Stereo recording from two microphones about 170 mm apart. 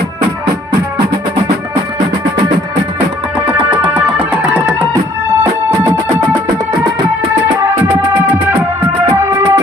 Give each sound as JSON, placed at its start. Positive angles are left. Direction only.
{"t": 3.9, "sound": "music", "side_deg": -10}
{"t": 9.1, "sound": "music", "side_deg": -15}